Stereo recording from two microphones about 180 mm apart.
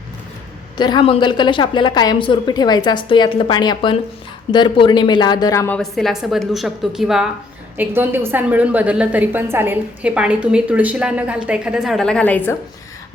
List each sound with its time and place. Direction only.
0.8 s a woman's voice: 25° left (ahead or behind); by 12.5 s 10° left (ahead or behind)